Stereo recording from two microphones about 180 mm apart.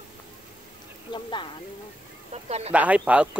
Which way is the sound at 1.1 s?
25° left (ahead or behind).